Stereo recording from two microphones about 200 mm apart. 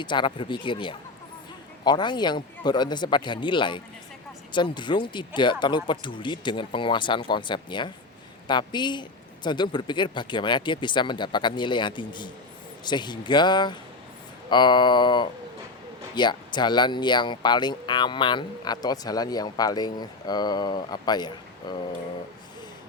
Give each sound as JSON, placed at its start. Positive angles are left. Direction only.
{"t": 0.0, "sound": "speech", "side_deg": 25}